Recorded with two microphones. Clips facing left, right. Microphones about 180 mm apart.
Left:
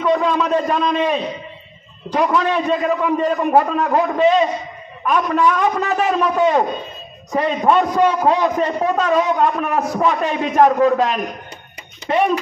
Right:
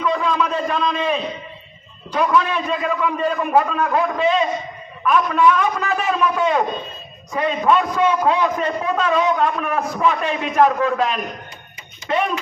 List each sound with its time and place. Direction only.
0.0 s a man's voice: 40° left (ahead or behind)